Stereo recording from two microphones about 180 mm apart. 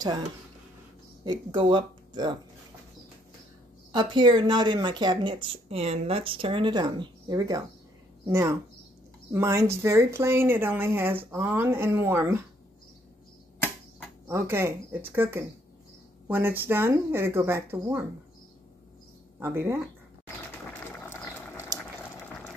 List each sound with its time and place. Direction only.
1.2 s speech: 25° right (ahead or behind)
3.9 s speech: 25° right (ahead or behind)
14.2 s speech: 15° right (ahead or behind)
19.4 s speech: 15° right (ahead or behind)
21.0 s a sound: 10° left (ahead or behind)